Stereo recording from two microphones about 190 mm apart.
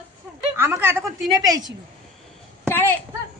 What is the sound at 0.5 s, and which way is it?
A woman's voice, 10° right (ahead or behind).